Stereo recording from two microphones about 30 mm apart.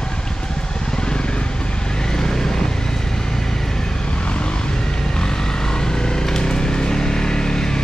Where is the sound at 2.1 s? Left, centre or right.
Centre.